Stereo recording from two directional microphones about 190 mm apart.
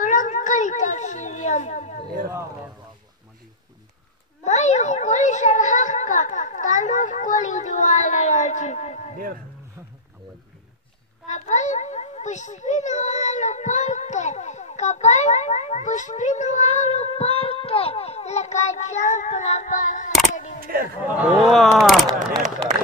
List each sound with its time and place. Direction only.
0.0 s children playing: 45° left (ahead or behind)
4.5 s a sound: 35° left (ahead or behind)
11.2 s a child's voice: 40° left (ahead or behind)
20.6 s a man's voice: 50° right (ahead or behind)
21.2 s speech: centre (ahead or behind)